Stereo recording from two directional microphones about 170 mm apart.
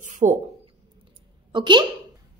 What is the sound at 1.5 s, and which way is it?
Speech, 25° right (ahead or behind).